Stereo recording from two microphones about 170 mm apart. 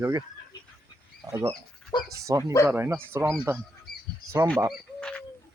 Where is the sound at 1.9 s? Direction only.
25° left (ahead or behind).